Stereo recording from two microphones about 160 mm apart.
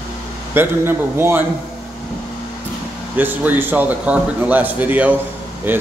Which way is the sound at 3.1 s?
10° right (ahead or behind).